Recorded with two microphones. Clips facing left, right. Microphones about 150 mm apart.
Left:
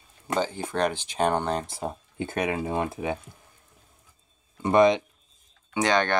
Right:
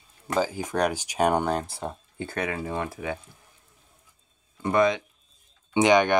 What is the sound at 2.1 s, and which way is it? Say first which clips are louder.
Speech: left 3 dB; 20° left (ahead or behind).